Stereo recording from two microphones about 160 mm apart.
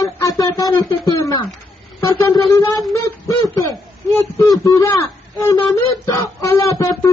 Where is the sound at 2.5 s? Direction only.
20° left (ahead or behind).